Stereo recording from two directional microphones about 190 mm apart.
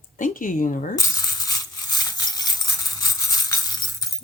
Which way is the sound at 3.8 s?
20° left (ahead or behind).